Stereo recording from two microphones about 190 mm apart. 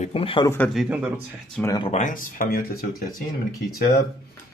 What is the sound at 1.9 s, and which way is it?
Speech, 40° left (ahead or behind).